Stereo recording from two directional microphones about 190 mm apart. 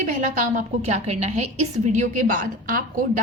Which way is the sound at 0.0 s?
40° right (ahead or behind).